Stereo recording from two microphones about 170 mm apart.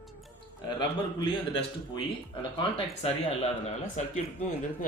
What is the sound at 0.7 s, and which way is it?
Speech, 30° left (ahead or behind).